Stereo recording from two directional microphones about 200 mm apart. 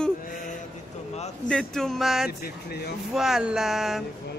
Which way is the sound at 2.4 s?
50° left (ahead or behind).